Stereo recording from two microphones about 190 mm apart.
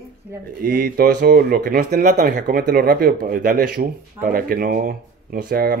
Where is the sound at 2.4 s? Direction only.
55° right (ahead or behind).